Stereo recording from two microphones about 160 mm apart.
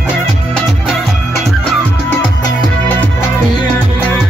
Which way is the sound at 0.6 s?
Centre (ahead or behind).